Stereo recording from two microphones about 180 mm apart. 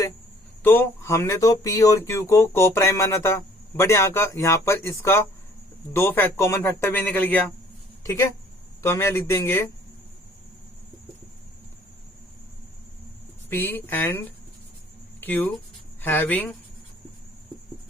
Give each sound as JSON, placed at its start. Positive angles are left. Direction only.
{"t": 0.6, "sound": "speech", "side_deg": 10}
{"t": 13.5, "sound": "speech", "side_deg": 10}